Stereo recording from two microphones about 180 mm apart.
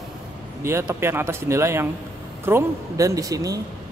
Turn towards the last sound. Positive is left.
turn(degrees=-20)  # may be behind; listen again after turning